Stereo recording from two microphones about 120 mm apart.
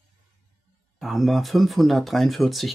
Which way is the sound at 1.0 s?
Centre (ahead or behind).